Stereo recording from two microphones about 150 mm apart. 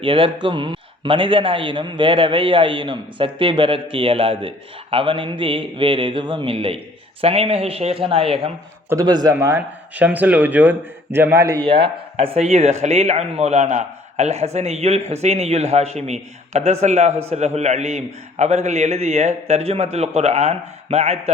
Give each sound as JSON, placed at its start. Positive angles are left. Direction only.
{"t": 0.0, "sound": "speech", "side_deg": -35}
{"t": 8.9, "sound": "a man's voice", "side_deg": -25}
{"t": 11.6, "sound": "speech", "side_deg": -35}